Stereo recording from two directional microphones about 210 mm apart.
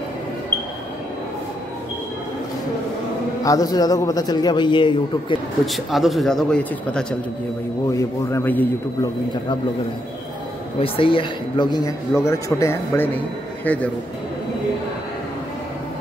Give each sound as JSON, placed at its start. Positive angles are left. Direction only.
{"t": 3.4, "sound": "a man's voice", "side_deg": 15}
{"t": 5.7, "sound": "speech", "side_deg": 0}
{"t": 10.8, "sound": "a man's voice", "side_deg": 25}